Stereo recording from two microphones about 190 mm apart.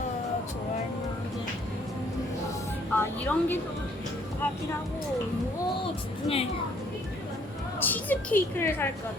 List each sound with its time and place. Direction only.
2.9 s music: 10° left (ahead or behind)
6.2 s speech: 30° left (ahead or behind)
7.8 s a woman's voice: 10° left (ahead or behind)